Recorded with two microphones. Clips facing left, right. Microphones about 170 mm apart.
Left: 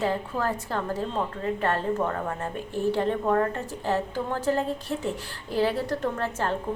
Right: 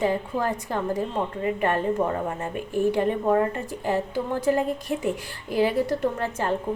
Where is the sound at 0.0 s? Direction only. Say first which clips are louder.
Right 2 dB; 15° right (ahead or behind).